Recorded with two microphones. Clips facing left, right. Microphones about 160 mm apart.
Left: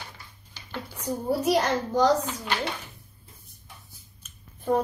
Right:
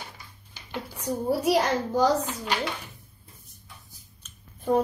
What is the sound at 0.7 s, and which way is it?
A child's voice, 10° right (ahead or behind).